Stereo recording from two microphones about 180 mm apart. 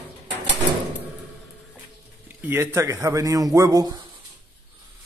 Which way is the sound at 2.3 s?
10° right (ahead or behind).